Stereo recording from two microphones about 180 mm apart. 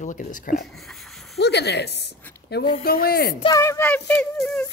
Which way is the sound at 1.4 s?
65° left (ahead or behind).